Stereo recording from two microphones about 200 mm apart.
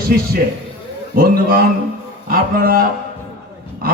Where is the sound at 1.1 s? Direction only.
45° right (ahead or behind).